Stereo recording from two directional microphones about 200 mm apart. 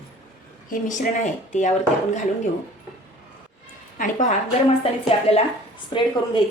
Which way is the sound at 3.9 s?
40° left (ahead or behind).